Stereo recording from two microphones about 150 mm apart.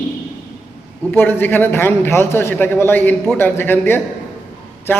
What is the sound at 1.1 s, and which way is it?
A man's voice, 15° left (ahead or behind).